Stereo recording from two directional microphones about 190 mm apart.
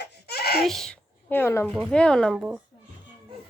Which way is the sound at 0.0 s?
60° left (ahead or behind).